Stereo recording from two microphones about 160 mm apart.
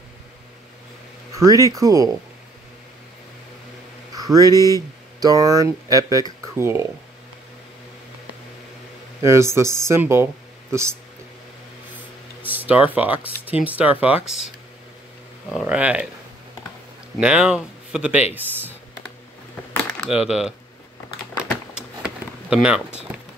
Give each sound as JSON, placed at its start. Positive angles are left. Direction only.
{"t": 1.4, "sound": "speech", "side_deg": -20}
{"t": 4.1, "sound": "speech", "side_deg": -25}
{"t": 9.2, "sound": "speech", "side_deg": -15}
{"t": 12.4, "sound": "speech", "side_deg": -10}
{"t": 15.5, "sound": "speech", "side_deg": -10}
{"t": 17.2, "sound": "speech", "side_deg": -5}
{"t": 19.7, "sound": "a sound", "side_deg": 10}
{"t": 20.1, "sound": "speech", "side_deg": -5}
{"t": 21.7, "sound": "a sound", "side_deg": -5}